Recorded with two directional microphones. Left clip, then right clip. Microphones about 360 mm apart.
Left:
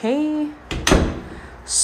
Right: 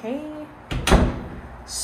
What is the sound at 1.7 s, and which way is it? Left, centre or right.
Speech, centre.